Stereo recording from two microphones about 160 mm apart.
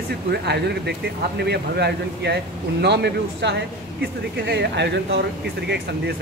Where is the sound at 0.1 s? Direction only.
90° right.